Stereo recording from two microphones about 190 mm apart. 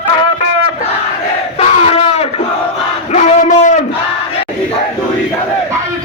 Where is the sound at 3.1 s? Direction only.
40° left (ahead or behind).